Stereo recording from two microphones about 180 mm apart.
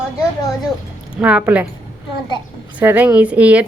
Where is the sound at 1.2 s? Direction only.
5° right (ahead or behind).